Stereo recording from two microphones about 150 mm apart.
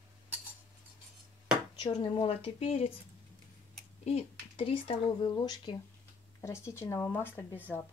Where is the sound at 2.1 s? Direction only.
40° left (ahead or behind).